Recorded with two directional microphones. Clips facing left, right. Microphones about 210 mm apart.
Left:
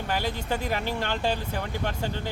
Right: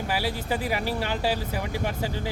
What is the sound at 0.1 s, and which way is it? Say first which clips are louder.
Speech: even; 5° right (ahead or behind).